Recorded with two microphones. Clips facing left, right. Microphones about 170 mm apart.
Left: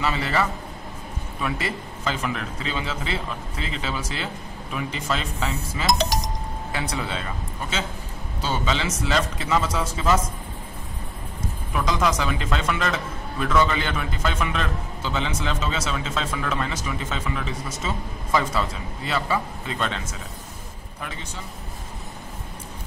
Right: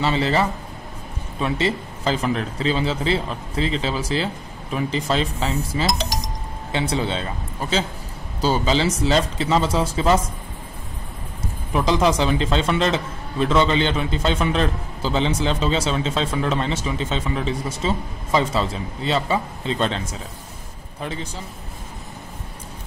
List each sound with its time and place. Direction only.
0.0 s a man's voice: 30° right (ahead or behind)
8.4 s a man's voice: 35° right (ahead or behind)
11.7 s a man's voice: 30° right (ahead or behind)
21.0 s a man's voice: 30° right (ahead or behind)